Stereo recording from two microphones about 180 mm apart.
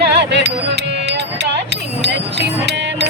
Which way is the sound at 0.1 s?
70° right (ahead or behind).